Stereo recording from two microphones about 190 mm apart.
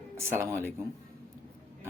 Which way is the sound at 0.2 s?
15° right (ahead or behind).